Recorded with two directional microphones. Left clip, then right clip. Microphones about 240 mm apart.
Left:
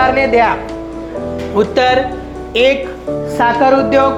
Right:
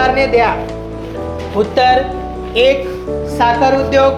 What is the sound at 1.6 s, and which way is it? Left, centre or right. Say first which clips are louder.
A woman's voice: right 1 dB; left.